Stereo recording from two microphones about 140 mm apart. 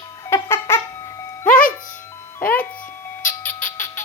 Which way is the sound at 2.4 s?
10° left (ahead or behind).